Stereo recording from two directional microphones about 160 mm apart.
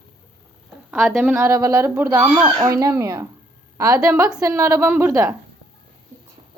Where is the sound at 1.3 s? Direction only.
15° right (ahead or behind).